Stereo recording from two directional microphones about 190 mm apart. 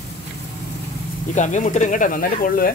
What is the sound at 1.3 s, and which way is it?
Speech, 40° left (ahead or behind).